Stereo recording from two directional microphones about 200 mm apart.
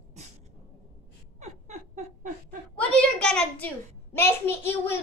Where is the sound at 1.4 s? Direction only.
35° right (ahead or behind).